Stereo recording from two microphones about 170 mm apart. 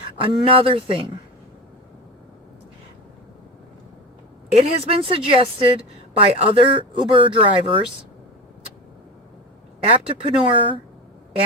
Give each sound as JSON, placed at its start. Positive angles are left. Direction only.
{"t": 0.2, "sound": "a woman's voice", "side_deg": -30}
{"t": 4.9, "sound": "a woman's voice", "side_deg": -35}
{"t": 9.8, "sound": "a woman's voice", "side_deg": -35}